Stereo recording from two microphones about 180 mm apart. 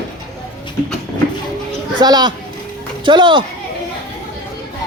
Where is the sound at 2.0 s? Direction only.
25° right (ahead or behind).